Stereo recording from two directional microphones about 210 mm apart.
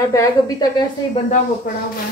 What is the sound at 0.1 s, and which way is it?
Speech, 15° left (ahead or behind).